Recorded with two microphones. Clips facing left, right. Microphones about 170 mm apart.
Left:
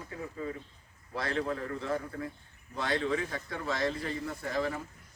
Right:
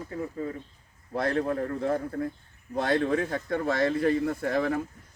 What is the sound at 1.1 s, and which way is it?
Speech, 50° right (ahead or behind).